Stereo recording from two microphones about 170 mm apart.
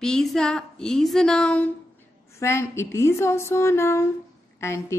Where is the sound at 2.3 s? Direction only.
15° left (ahead or behind).